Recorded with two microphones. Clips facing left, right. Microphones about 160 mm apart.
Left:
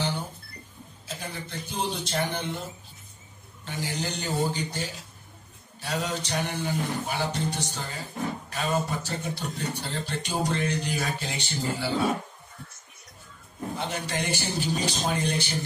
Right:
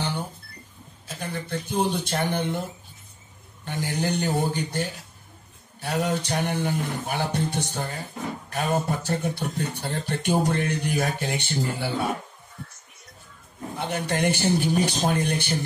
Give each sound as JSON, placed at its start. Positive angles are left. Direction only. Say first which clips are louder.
{"t": 1.0, "sound": "speech", "louder": "right 4 dB", "side_deg": -55}
{"t": 3.6, "sound": "speech", "louder": "right 5 dB", "side_deg": -55}
{"t": 13.7, "sound": "speech", "louder": "right 5 dB", "side_deg": -55}